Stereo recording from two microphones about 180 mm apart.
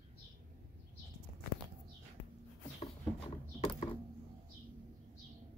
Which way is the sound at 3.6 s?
30° left (ahead or behind).